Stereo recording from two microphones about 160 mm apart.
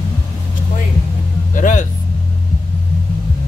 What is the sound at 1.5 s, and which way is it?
Music, 55° left (ahead or behind).